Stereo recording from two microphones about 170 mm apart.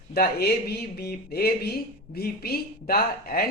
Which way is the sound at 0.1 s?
70° left (ahead or behind).